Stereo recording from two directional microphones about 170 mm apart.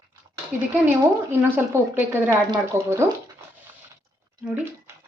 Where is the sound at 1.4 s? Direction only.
10° right (ahead or behind).